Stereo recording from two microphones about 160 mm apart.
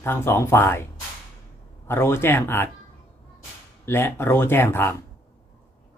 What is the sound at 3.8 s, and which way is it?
Speech, 15° left (ahead or behind).